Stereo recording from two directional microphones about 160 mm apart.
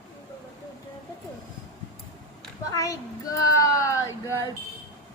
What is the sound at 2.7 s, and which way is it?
Speech, 20° left (ahead or behind).